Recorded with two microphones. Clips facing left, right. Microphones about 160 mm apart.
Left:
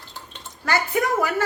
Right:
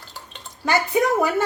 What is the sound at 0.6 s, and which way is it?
Speech, 15° right (ahead or behind).